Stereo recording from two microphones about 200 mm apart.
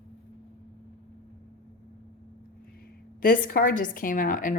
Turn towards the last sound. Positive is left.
turn(degrees=45)  # may be behind; listen again after turning